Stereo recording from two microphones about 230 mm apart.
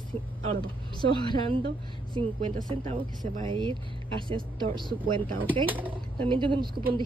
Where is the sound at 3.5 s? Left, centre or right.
Right.